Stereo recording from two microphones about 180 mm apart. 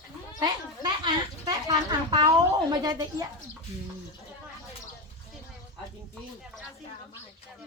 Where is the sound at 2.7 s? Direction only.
20° right (ahead or behind).